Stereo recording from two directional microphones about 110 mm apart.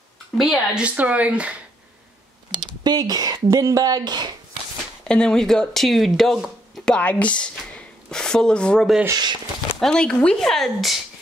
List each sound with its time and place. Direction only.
0.4 s speech: centre (ahead or behind)
0.8 s speech: 15° right (ahead or behind)
2.5 s speech: 40° right (ahead or behind)
5.0 s speech: 10° left (ahead or behind)
9.1 s speech: 40° right (ahead or behind)
9.8 s speech: 5° left (ahead or behind)